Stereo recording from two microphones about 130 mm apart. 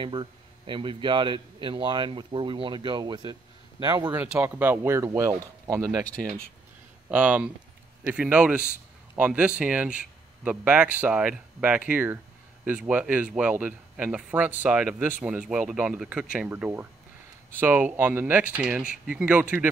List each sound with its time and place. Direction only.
0.0 s a man's voice: 40° right (ahead or behind)
4.1 s speech: 15° right (ahead or behind)
7.1 s speech: 10° right (ahead or behind)